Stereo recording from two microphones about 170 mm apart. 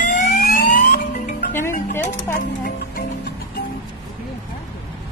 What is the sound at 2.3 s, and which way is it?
Music, 55° left (ahead or behind).